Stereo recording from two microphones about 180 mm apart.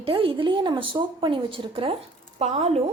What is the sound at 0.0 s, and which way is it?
A woman's voice, 30° right (ahead or behind).